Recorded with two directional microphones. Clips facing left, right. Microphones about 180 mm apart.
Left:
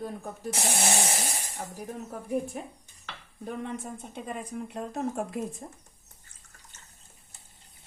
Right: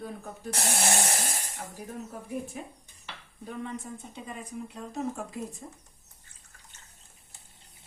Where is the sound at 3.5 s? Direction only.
55° left (ahead or behind).